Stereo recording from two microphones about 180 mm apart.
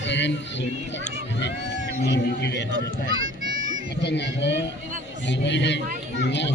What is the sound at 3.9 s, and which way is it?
Speech, 70° left (ahead or behind).